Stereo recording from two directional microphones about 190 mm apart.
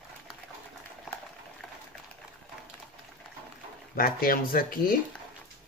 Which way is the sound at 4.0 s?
50° left (ahead or behind).